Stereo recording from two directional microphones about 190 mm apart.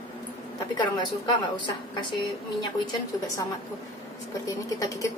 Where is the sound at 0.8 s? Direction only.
25° left (ahead or behind).